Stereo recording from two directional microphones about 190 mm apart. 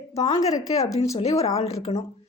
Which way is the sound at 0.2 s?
30° left (ahead or behind).